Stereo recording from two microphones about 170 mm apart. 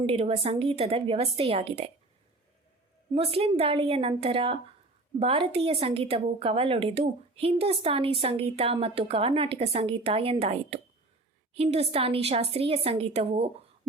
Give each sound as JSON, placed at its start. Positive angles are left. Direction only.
{"t": 0.0, "sound": "a woman's voice", "side_deg": -35}
{"t": 3.2, "sound": "a woman's voice", "side_deg": -35}